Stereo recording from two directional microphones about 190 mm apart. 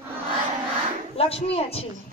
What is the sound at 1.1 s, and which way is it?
Speech, 30° left (ahead or behind).